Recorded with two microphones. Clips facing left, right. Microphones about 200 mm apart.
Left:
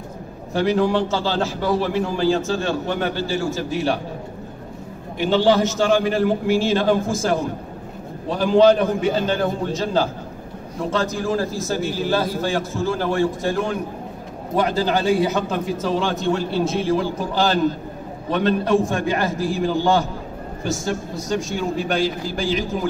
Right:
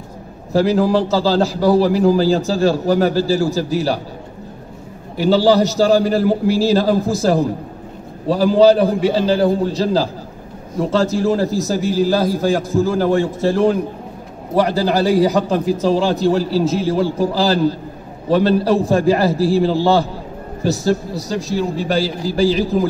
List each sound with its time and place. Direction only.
0.5 s a man's voice: 35° right (ahead or behind)
5.1 s a man's voice: 35° right (ahead or behind)